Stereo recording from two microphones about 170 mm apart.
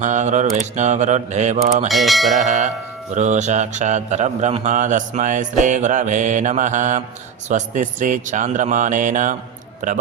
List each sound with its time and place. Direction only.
0.0 s music: 45° right (ahead or behind)
1.9 s bell: centre (ahead or behind)
2.3 s music: 45° right (ahead or behind)